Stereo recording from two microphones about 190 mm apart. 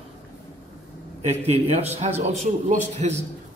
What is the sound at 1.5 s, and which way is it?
A man's voice, 35° right (ahead or behind).